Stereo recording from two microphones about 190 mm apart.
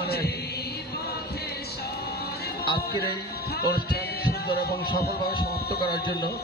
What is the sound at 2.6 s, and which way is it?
Speech, 55° left (ahead or behind).